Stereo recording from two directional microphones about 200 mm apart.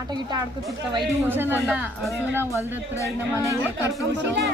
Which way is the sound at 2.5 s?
15° left (ahead or behind).